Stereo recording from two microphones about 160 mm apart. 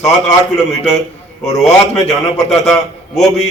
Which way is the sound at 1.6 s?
45° left (ahead or behind).